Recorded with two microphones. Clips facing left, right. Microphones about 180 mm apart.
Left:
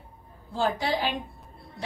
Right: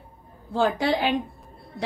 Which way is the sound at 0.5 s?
60° right (ahead or behind).